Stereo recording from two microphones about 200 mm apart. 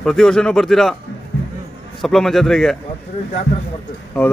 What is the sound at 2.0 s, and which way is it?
Speech, centre (ahead or behind).